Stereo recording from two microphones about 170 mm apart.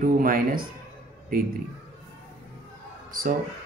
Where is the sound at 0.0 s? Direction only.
55° right (ahead or behind).